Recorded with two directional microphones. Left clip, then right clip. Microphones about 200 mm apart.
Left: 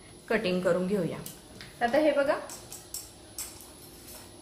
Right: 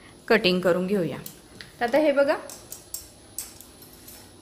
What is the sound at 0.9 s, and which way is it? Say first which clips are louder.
Speech: right 4 dB; 35° right (ahead or behind).